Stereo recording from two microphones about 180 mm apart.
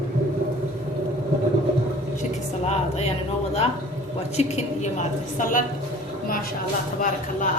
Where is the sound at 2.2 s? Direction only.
40° left (ahead or behind).